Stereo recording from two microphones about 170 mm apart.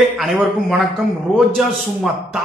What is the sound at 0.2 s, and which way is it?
Speech, centre (ahead or behind).